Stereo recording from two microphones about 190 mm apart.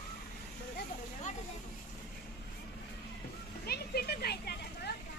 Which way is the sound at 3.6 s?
55° left (ahead or behind).